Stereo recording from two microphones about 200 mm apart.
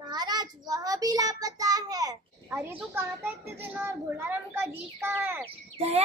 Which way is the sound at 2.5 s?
10° right (ahead or behind).